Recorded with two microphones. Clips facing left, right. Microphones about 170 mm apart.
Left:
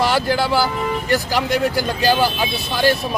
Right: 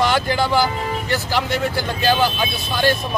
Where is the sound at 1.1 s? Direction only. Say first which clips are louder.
Left 3 dB; 40° left (ahead or behind).